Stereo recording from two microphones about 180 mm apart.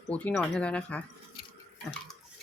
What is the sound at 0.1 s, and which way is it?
Speech, 10° left (ahead or behind).